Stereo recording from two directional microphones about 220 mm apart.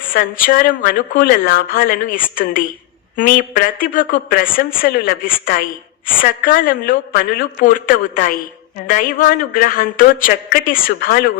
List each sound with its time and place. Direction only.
0.1 s a woman's voice: 40° left (ahead or behind)